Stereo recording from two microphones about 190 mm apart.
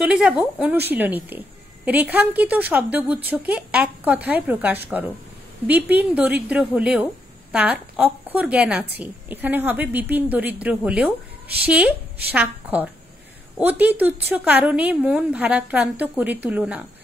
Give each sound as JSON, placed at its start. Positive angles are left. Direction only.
{"t": 0.0, "sound": "a woman's voice", "side_deg": -5}